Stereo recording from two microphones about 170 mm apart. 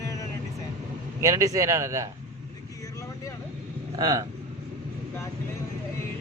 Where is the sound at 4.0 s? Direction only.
20° right (ahead or behind).